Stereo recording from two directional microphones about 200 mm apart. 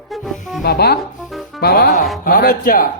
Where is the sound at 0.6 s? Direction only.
50° left (ahead or behind).